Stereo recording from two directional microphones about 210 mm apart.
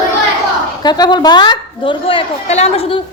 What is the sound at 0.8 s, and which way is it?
A woman's voice, 20° left (ahead or behind).